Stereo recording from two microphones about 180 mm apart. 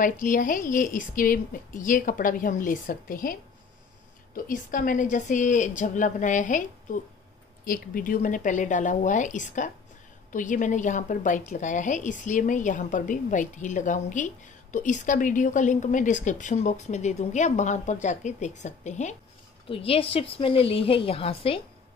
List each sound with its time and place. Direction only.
0.0 s a woman's voice: 45° left (ahead or behind)
4.5 s a woman's voice: 45° left (ahead or behind); by 21.5 s 30° left (ahead or behind)